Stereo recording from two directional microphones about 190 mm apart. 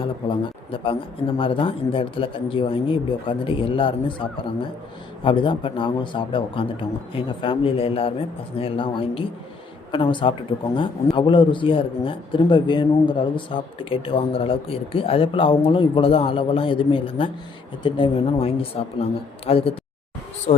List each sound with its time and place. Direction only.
0.0 s speech: 25° left (ahead or behind)